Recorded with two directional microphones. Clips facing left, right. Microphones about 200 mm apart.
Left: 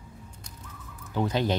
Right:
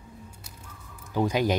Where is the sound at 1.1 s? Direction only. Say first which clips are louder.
Right 2 dB; 10° right (ahead or behind).